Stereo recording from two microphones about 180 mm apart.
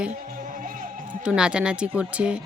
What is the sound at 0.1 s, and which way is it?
Music, 50° right (ahead or behind).